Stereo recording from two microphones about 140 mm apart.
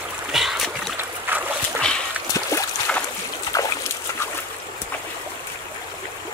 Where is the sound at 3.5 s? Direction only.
25° left (ahead or behind).